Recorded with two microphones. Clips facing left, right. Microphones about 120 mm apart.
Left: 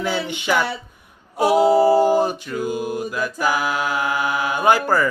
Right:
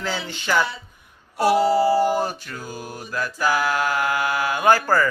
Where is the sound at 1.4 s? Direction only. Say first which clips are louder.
Left 2 dB; 20° left (ahead or behind).